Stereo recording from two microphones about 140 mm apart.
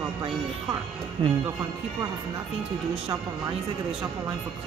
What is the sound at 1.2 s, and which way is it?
Speech, 40° right (ahead or behind).